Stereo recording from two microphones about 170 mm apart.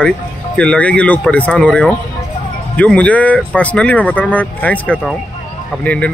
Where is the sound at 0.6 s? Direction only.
5° left (ahead or behind).